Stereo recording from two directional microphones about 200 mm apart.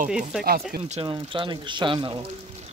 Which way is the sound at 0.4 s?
40° right (ahead or behind).